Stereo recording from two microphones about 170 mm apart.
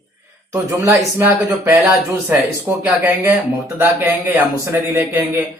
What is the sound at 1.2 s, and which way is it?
A man's voice, 15° right (ahead or behind).